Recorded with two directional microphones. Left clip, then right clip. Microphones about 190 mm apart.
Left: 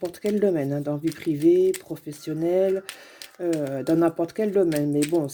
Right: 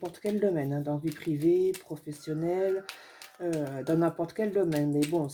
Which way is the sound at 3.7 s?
50° left (ahead or behind).